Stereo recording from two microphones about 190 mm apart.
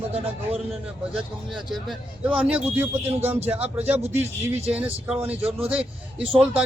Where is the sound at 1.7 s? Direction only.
Centre (ahead or behind).